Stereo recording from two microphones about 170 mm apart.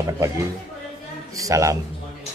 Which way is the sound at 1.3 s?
20° right (ahead or behind).